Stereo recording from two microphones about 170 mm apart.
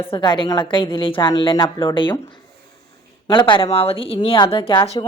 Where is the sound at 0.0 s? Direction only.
30° left (ahead or behind).